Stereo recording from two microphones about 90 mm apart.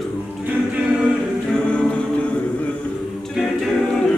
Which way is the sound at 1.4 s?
10° left (ahead or behind).